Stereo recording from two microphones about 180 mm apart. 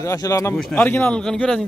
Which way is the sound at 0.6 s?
5° left (ahead or behind).